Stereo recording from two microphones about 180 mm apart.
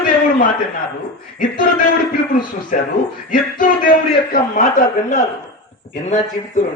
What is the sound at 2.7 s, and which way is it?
A man's voice, 45° left (ahead or behind).